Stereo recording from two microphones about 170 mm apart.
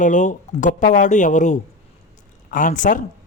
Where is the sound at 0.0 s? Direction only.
45° left (ahead or behind).